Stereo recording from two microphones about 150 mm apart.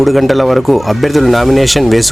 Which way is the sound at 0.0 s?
Centre (ahead or behind).